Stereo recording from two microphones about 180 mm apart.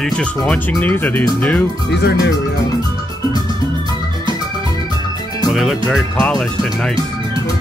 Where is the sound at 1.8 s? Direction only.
70° left (ahead or behind).